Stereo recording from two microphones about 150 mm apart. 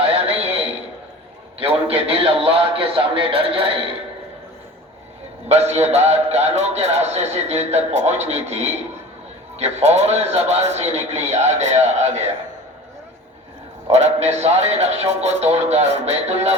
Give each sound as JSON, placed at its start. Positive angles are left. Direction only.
{"t": 0.0, "sound": "a sound", "side_deg": -40}
{"t": 1.5, "sound": "a man's voice", "side_deg": -40}
{"t": 5.5, "sound": "a man's voice", "side_deg": -45}
{"t": 13.9, "sound": "a man's voice", "side_deg": -50}